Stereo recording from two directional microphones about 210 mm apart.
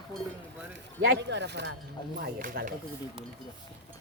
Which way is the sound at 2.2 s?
45° right (ahead or behind).